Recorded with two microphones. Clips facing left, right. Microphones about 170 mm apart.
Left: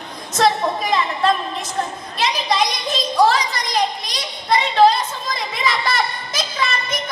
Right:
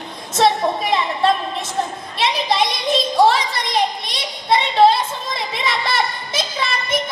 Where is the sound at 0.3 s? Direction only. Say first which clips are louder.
Right 1 dB; 25° right (ahead or behind).